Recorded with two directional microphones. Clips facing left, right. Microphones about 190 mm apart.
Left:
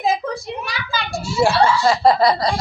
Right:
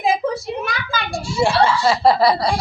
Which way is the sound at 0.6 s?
50° right (ahead or behind).